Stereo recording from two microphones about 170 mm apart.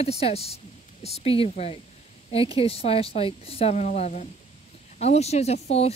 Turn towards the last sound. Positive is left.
turn(degrees=40)  # may be behind; listen again after turning